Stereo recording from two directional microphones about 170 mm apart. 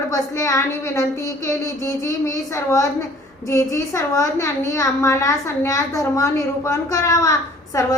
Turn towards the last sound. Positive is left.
turn(degrees=20)  # may be behind; listen again after turning